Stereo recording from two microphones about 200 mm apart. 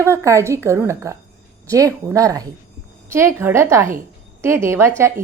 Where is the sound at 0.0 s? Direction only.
15° right (ahead or behind).